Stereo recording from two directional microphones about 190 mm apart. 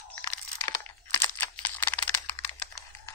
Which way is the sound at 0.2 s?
15° left (ahead or behind).